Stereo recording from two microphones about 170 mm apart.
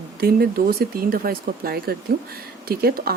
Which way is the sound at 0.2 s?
65° right (ahead or behind).